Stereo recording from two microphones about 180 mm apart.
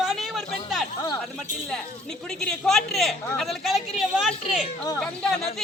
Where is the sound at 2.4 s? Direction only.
Centre (ahead or behind).